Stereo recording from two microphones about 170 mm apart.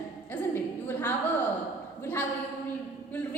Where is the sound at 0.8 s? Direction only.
10° left (ahead or behind).